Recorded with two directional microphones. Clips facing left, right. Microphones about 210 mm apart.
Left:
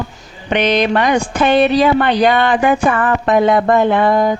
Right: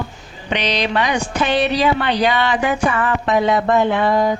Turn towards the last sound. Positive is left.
turn(degrees=50)  # may be behind; listen again after turning